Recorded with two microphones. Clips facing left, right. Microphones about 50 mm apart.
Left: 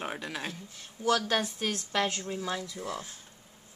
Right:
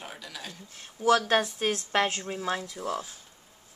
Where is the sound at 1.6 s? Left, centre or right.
Right.